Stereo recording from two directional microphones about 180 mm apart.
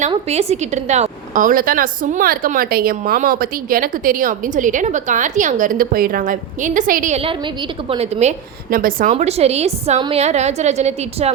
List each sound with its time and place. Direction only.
0.1 s a woman's voice: 35° right (ahead or behind)
7.9 s a woman's voice: 35° right (ahead or behind)
8.7 s a woman's voice: 50° right (ahead or behind)
9.0 s a woman's voice: 35° right (ahead or behind)